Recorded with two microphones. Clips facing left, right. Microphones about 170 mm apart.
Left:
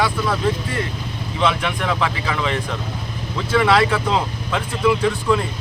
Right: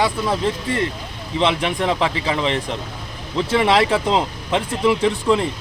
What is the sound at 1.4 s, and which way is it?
Speech, 25° right (ahead or behind).